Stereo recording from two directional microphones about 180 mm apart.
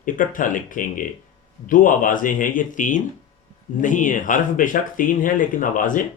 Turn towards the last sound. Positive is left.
turn(degrees=50)  # may be behind; listen again after turning